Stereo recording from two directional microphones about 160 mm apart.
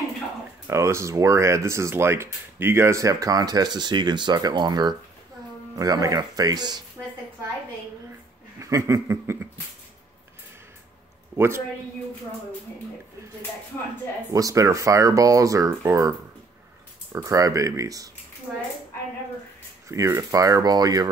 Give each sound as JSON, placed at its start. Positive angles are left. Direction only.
{"t": 0.7, "sound": "speech", "side_deg": -20}
{"t": 8.5, "sound": "speech", "side_deg": -20}
{"t": 11.3, "sound": "a man's voice", "side_deg": -15}
{"t": 14.3, "sound": "speech", "side_deg": -20}
{"t": 17.1, "sound": "speech", "side_deg": -20}
{"t": 18.5, "sound": "speech", "side_deg": -5}
{"t": 19.9, "sound": "speech", "side_deg": -20}